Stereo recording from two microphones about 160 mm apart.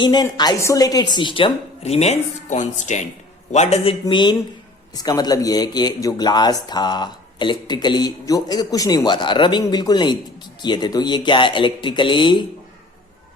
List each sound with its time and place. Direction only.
0.0 s a man's voice: 25° left (ahead or behind); by 3.9 s 45° left (ahead or behind)
4.0 s speech: 30° left (ahead or behind)